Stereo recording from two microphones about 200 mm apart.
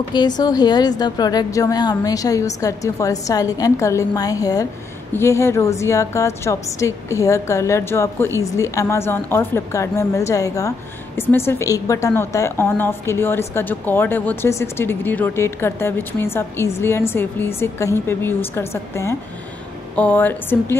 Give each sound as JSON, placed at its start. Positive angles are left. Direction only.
{"t": 0.4, "sound": "a woman's voice", "side_deg": 20}